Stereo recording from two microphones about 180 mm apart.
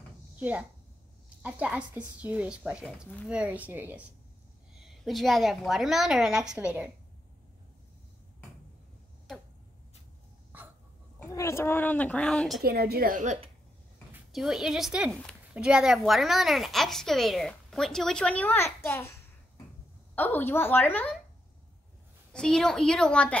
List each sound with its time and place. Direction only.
0.4 s a woman's voice: 10° right (ahead or behind)
11.2 s a woman's voice: 15° left (ahead or behind); by 12.6 s centre (ahead or behind)
12.6 s a woman's voice: 60° right (ahead or behind); by 13.5 s 40° right (ahead or behind)
14.1 s a woman's voice: centre (ahead or behind)
22.3 s a woman's voice: 5° left (ahead or behind)